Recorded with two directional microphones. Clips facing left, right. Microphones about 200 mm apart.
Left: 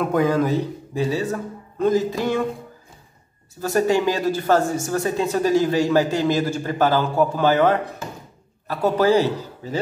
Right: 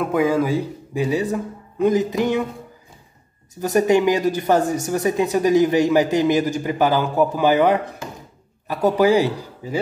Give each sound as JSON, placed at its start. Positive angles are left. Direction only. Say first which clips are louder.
{"t": 0.0, "sound": "speech", "louder": "right 1 dB", "side_deg": -10}
{"t": 3.5, "sound": "speech", "louder": "right 3 dB", "side_deg": -15}